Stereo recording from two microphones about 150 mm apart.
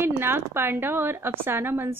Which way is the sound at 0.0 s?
15° right (ahead or behind).